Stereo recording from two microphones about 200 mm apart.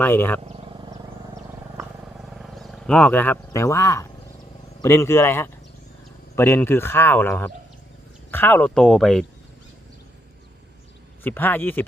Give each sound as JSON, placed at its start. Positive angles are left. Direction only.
{"t": 0.0, "sound": "speech", "side_deg": 10}
{"t": 0.5, "sound": "wild animals", "side_deg": -25}
{"t": 1.7, "sound": "wild animals", "side_deg": -5}
{"t": 4.8, "sound": "speech", "side_deg": 15}
{"t": 11.2, "sound": "speech", "side_deg": 10}